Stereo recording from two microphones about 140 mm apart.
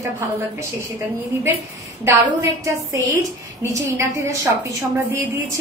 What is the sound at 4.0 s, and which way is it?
A woman's voice, 20° right (ahead or behind).